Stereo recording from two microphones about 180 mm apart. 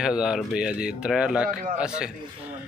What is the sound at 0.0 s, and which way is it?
Speech, 5° right (ahead or behind).